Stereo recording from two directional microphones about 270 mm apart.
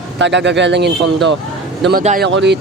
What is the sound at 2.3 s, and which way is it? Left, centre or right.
Speech, right.